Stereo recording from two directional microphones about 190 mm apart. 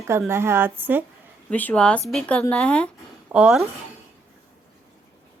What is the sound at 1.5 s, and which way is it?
A woman's voice, 5° left (ahead or behind).